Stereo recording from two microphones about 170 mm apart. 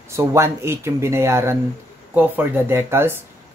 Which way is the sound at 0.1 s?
15° right (ahead or behind).